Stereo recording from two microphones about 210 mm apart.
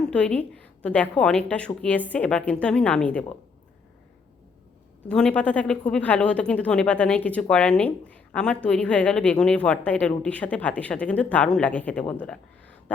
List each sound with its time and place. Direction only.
0.1 s a woman's voice: 5° left (ahead or behind)
5.0 s a woman's voice: 5° left (ahead or behind)